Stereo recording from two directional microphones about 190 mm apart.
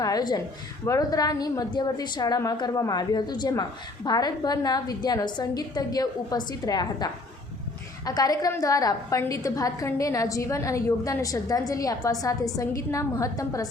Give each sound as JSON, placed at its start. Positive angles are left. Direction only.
{"t": 0.0, "sound": "a woman's voice", "side_deg": 20}